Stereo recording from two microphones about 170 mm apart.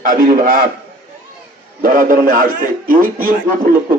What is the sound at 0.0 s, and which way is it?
Speech, 55° right (ahead or behind).